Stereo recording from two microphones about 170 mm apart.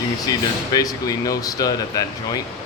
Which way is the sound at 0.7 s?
20° left (ahead or behind).